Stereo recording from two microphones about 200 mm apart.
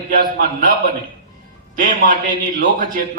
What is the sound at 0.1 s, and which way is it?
Speech, 45° right (ahead or behind).